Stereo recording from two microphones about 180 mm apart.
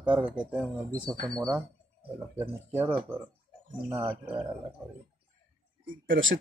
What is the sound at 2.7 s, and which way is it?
Speech, 10° right (ahead or behind).